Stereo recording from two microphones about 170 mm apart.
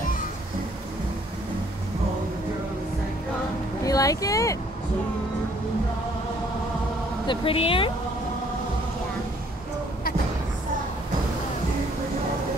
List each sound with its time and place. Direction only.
3.8 s speech: 20° left (ahead or behind)
7.2 s speech: 35° left (ahead or behind)